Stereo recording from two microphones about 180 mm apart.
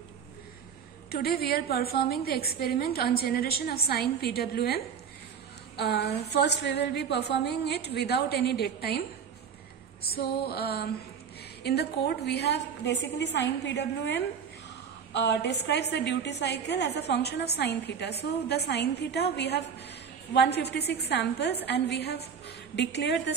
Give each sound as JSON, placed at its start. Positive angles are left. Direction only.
{"t": 1.1, "sound": "a woman's voice", "side_deg": 60}
{"t": 10.1, "sound": "a woman's voice", "side_deg": 60}